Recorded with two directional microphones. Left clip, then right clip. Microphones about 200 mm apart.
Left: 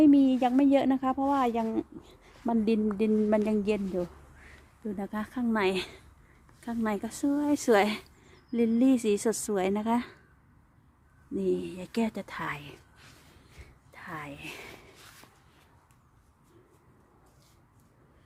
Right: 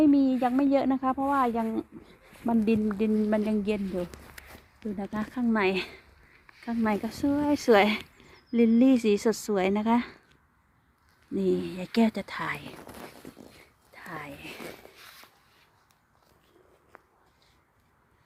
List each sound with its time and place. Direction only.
0.0 s speech: 10° left (ahead or behind)
4.9 s speech: 5° left (ahead or behind)
11.3 s speech: 10° right (ahead or behind)
13.9 s a sound: 5° left (ahead or behind)